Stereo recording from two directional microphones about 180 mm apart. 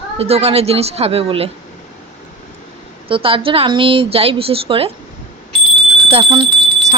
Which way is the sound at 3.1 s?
30° right (ahead or behind).